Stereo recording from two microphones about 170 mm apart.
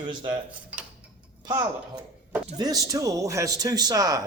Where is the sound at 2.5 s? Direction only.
20° right (ahead or behind).